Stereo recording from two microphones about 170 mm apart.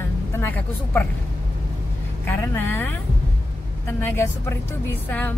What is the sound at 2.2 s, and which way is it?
A woman's voice, 10° left (ahead or behind).